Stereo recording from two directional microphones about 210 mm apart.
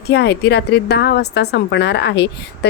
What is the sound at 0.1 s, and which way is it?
A woman's voice, 50° left (ahead or behind).